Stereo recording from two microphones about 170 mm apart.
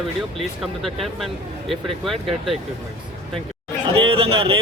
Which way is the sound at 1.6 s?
Centre (ahead or behind).